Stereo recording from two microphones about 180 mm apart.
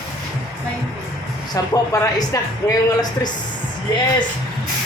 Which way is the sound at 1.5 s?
20° left (ahead or behind).